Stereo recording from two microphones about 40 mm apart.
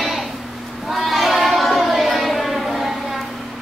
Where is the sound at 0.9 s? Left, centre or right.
Centre.